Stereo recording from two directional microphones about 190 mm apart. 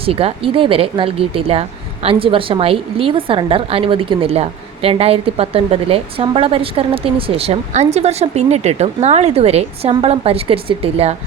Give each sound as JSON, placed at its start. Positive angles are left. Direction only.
{"t": 0.0, "sound": "a woman's voice", "side_deg": -30}